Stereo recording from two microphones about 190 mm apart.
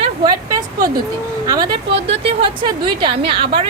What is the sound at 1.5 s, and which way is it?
A woman's voice, 20° right (ahead or behind).